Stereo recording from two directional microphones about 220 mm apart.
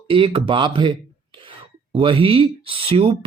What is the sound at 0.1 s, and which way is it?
Speech, 25° right (ahead or behind).